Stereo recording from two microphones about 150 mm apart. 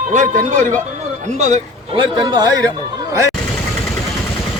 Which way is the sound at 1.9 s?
25° right (ahead or behind).